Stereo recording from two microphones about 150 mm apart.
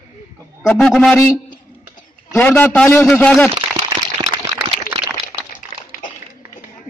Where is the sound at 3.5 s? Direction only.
40° right (ahead or behind).